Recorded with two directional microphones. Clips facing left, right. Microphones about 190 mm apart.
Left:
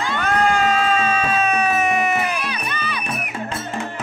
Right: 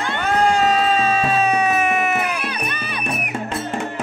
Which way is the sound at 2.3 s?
55° right (ahead or behind).